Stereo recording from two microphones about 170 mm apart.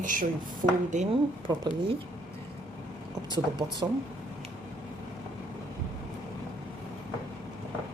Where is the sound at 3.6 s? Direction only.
20° right (ahead or behind).